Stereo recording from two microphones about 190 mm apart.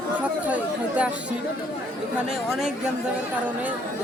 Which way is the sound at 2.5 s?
Centre (ahead or behind).